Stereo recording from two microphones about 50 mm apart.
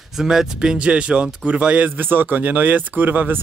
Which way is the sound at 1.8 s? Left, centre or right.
Right.